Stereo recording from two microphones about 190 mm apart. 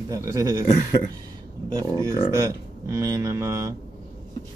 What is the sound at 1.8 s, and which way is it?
Speech, 15° right (ahead or behind).